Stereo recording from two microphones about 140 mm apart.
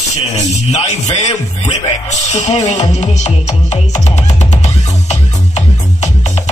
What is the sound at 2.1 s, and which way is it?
Music, 55° left (ahead or behind).